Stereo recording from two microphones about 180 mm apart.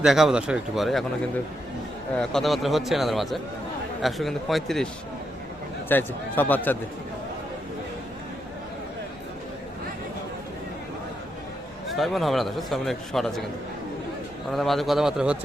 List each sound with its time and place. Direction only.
0.0 s a man's voice: centre (ahead or behind)
2.1 s a man's voice: centre (ahead or behind)
5.9 s a man's voice: 10° left (ahead or behind)
11.9 s a man's voice: centre (ahead or behind)
14.5 s a man's voice: centre (ahead or behind)